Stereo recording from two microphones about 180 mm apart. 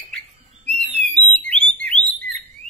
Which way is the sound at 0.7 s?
40° right (ahead or behind).